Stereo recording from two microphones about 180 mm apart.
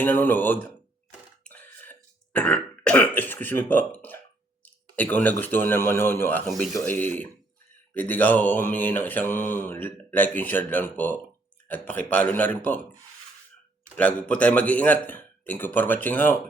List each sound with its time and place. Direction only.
0.0 s mantra: 10° left (ahead or behind)
1.5 s throat clearing: 10° left (ahead or behind)
4.6 s speech: 10° left (ahead or behind)
6.7 s mantra: 10° left (ahead or behind)
13.9 s mantra: 10° left (ahead or behind)